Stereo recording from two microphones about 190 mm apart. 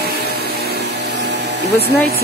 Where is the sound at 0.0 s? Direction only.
55° right (ahead or behind).